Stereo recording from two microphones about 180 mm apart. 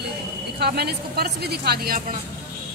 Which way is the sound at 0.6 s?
65° right (ahead or behind).